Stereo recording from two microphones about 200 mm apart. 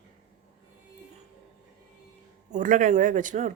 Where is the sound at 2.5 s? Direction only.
40° right (ahead or behind).